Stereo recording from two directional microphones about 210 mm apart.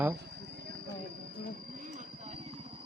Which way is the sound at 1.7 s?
35° right (ahead or behind).